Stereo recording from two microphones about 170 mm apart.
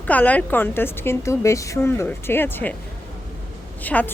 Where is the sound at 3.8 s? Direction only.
10° left (ahead or behind).